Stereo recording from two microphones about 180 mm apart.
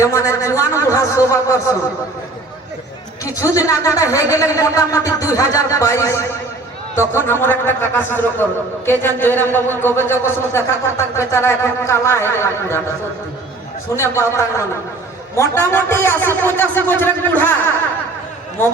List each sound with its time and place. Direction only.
0.0 s speech: 15° left (ahead or behind)
3.2 s speech: 20° left (ahead or behind)
13.9 s speech: 15° left (ahead or behind)